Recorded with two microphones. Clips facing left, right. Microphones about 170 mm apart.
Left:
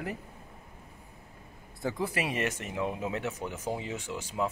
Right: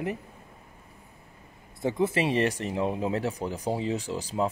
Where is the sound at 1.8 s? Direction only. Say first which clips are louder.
Right 6 dB; 20° right (ahead or behind).